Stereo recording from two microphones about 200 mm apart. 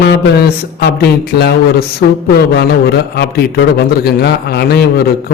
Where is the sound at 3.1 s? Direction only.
55° left (ahead or behind).